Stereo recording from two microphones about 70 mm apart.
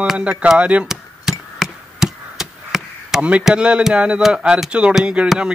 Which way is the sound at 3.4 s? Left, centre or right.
Centre.